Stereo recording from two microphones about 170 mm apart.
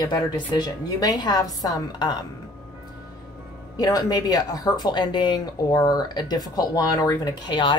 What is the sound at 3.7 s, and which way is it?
A woman's voice, 20° left (ahead or behind).